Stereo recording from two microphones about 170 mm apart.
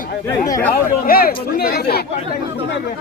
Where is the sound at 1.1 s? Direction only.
60° left (ahead or behind).